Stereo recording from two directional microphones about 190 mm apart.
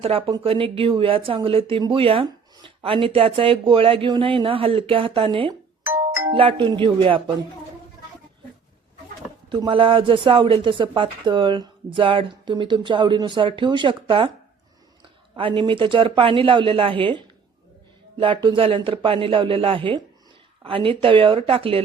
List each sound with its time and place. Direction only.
0.0 s speech: 30° right (ahead or behind)
6.0 s doorbell: 15° right (ahead or behind)
6.3 s speech: 30° right (ahead or behind)
9.5 s speech: 25° right (ahead or behind)
15.4 s speech: 25° right (ahead or behind)